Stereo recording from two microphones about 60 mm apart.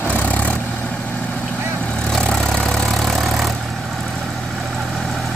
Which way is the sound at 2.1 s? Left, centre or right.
Centre.